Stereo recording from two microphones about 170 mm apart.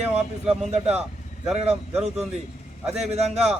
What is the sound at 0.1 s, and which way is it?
Speech, 40° right (ahead or behind).